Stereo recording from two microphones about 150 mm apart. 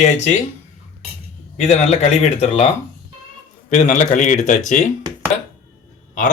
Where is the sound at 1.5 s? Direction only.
50° left (ahead or behind).